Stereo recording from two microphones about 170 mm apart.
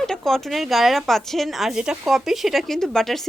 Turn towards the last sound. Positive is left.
turn(degrees=0)  # may be behind; listen again after turning